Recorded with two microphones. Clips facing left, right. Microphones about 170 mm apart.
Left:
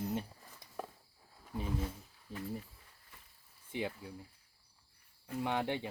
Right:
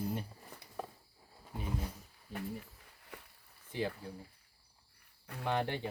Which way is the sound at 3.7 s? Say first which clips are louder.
Right 1 dB; 20° left (ahead or behind).